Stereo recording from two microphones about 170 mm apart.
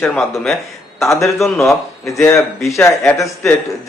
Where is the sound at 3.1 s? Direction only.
15° left (ahead or behind).